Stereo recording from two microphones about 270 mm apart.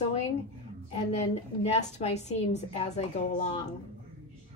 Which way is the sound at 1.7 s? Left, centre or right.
Left.